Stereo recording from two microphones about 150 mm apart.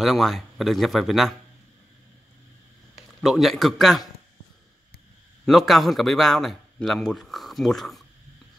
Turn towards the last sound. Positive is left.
turn(degrees=0)  # may be behind; listen again after turning